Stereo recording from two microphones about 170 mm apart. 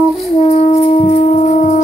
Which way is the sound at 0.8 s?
45° left (ahead or behind).